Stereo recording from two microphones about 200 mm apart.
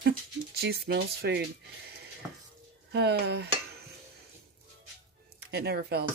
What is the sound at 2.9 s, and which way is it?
Speech, 55° right (ahead or behind).